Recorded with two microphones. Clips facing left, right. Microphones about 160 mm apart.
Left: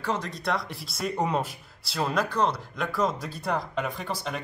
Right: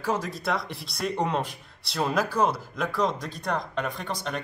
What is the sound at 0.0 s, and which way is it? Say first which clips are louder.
Speech: right 2 dB; 5° right (ahead or behind).